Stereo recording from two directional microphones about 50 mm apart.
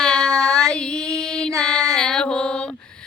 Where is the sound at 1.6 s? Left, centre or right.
Centre.